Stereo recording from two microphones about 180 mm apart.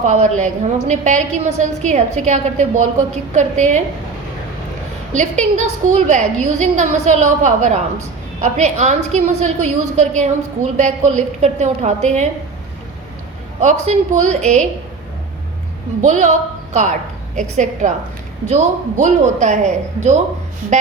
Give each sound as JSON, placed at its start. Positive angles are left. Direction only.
{"t": 0.0, "sound": "a woman's voice", "side_deg": -45}
{"t": 5.1, "sound": "a woman's voice", "side_deg": -45}
{"t": 13.6, "sound": "a woman's voice", "side_deg": -40}
{"t": 16.0, "sound": "a woman's voice", "side_deg": -45}
{"t": 17.3, "sound": "a woman's voice", "side_deg": -45}